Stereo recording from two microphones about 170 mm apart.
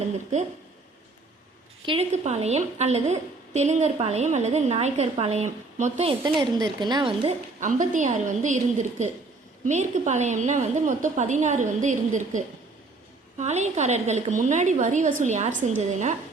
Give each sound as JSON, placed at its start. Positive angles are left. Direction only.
{"t": 1.9, "sound": "a woman's voice", "side_deg": -40}
{"t": 7.3, "sound": "a woman's voice", "side_deg": -50}
{"t": 13.4, "sound": "a woman's voice", "side_deg": -40}